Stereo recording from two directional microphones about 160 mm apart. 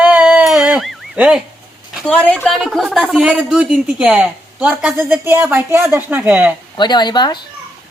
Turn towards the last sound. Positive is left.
turn(degrees=25)  # may be behind; listen again after turning